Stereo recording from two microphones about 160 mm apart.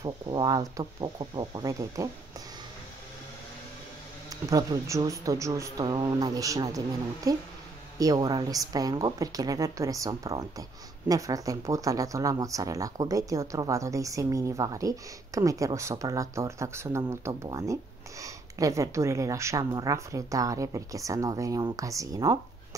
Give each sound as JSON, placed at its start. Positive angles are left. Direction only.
{"t": 0.0, "sound": "speech", "side_deg": -25}
{"t": 4.3, "sound": "speech", "side_deg": -20}